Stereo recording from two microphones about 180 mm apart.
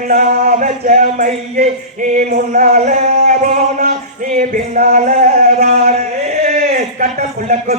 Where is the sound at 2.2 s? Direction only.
50° right (ahead or behind).